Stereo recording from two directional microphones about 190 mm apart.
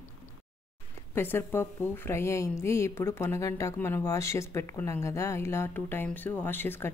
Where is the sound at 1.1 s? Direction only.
10° left (ahead or behind).